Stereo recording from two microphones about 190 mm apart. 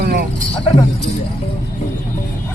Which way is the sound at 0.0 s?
55° right (ahead or behind).